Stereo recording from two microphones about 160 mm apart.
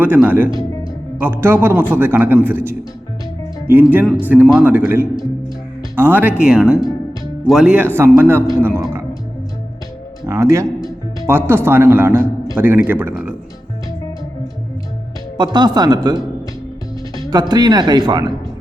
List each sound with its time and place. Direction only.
0.0 s a man's voice: 10° right (ahead or behind)
10.2 s a man's voice: 20° right (ahead or behind)
15.4 s speech: 25° right (ahead or behind)
17.5 s speech: 25° right (ahead or behind)